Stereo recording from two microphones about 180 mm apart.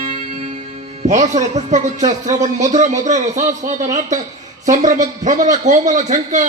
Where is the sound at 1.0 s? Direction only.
40° right (ahead or behind).